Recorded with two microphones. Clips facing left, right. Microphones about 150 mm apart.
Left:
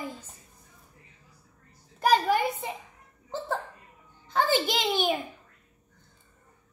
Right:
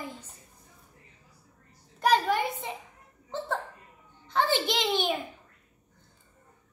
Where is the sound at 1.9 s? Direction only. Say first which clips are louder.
Left 1 dB; 10° left (ahead or behind).